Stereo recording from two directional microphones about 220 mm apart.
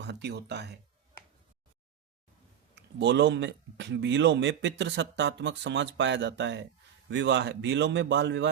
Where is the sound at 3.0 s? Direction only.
55° right (ahead or behind).